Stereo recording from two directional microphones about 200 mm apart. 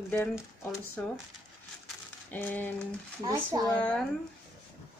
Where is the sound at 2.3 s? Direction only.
10° left (ahead or behind).